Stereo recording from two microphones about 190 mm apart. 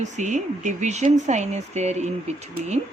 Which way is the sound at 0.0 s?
40° right (ahead or behind).